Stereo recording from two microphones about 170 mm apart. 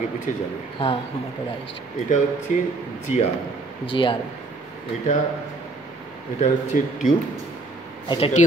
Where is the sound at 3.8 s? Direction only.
30° left (ahead or behind).